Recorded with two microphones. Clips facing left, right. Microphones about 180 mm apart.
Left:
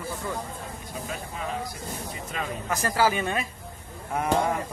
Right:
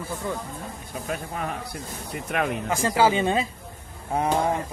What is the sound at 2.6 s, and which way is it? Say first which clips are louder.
Speech: right 2 dB; 25° right (ahead or behind).